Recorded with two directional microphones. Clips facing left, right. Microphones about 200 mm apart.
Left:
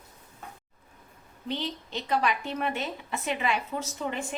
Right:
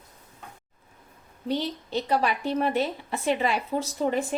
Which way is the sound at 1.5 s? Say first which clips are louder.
Right 5 dB; 40° right (ahead or behind).